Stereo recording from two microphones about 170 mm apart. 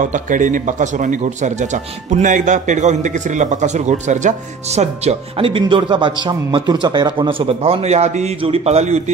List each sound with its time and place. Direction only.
0.0 s a man's voice: 50° right (ahead or behind)